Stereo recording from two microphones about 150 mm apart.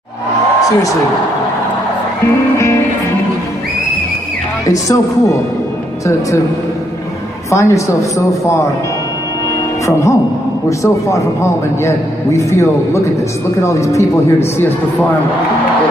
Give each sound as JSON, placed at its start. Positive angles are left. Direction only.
{"t": 2.5, "sound": "music", "side_deg": 20}
{"t": 4.6, "sound": "a man's voice", "side_deg": 20}
{"t": 7.5, "sound": "a man's voice", "side_deg": 20}
{"t": 9.8, "sound": "a man's voice", "side_deg": 20}